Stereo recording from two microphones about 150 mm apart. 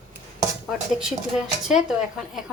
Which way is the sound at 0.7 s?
5° right (ahead or behind).